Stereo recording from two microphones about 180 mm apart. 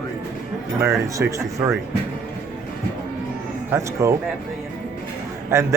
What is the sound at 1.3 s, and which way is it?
Speech, 15° right (ahead or behind).